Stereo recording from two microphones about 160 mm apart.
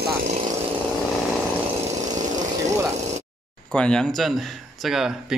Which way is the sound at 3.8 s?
5° left (ahead or behind).